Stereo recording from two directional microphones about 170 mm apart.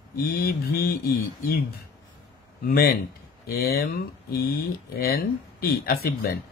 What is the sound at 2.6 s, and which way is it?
Speech, 55° left (ahead or behind).